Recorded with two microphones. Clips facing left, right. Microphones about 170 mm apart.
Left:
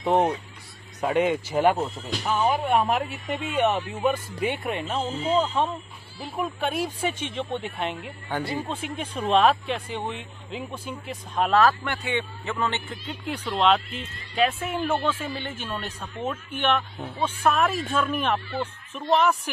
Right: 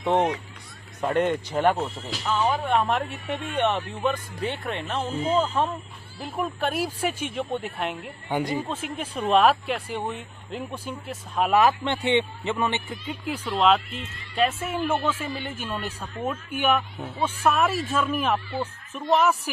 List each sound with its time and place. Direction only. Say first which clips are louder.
0.0 s speech: left 1 dB; 5° left (ahead or behind)
2.2 s speech: left 1 dB; 15° left (ahead or behind)
8.3 s a man's voice: right 3 dB; 15° right (ahead or behind)
8.6 s speech: even; 5° right (ahead or behind)
11.6 s a man's voice: right 1 dB; 25° right (ahead or behind); by 19.5 s 5° right (ahead or behind)